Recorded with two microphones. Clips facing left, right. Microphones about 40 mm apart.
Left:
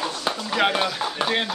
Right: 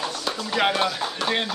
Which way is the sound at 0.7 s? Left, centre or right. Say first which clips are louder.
Even; centre.